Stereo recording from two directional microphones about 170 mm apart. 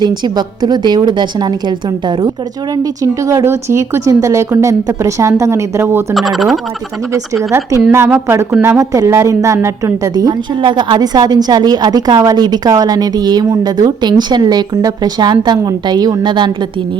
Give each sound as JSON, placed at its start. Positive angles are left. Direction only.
{"t": 0.0, "sound": "a woman's voice", "side_deg": -25}
{"t": 6.1, "sound": "speech", "side_deg": 0}
{"t": 7.8, "sound": "speech", "side_deg": -10}